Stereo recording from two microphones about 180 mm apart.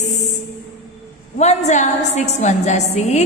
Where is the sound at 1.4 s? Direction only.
40° left (ahead or behind).